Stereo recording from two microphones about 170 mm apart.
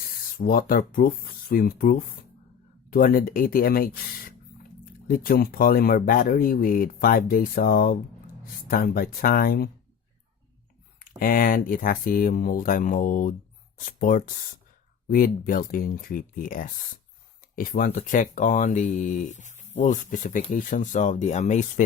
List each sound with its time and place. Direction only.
0.3 s speech: 55° left (ahead or behind)
11.0 s speech: 55° left (ahead or behind)